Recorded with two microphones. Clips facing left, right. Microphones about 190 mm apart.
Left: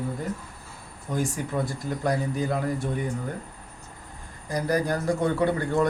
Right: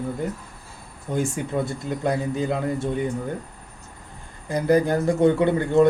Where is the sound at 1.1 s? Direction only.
25° right (ahead or behind).